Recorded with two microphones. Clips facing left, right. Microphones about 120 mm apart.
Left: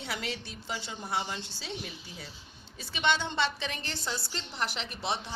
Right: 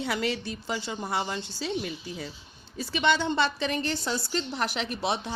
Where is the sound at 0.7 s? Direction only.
65° right (ahead or behind).